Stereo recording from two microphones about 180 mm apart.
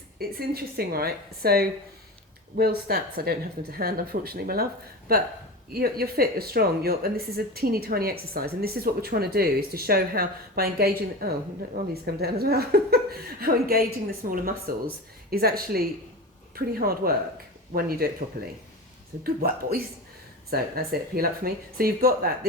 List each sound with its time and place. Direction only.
0.2 s speech: 60° right (ahead or behind)
5.7 s speech: 60° right (ahead or behind)